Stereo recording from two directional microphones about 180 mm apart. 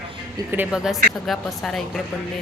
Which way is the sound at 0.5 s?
5° right (ahead or behind).